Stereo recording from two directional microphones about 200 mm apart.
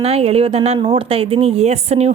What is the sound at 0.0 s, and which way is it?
Speech, 30° right (ahead or behind).